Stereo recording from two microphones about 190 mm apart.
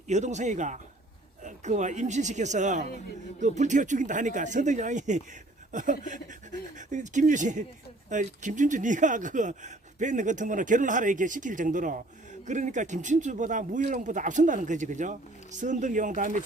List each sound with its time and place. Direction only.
0.1 s speech: 40° right (ahead or behind)